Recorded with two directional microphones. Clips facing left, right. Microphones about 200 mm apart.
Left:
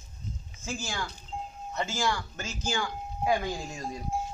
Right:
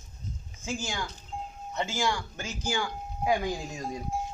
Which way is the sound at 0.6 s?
15° right (ahead or behind).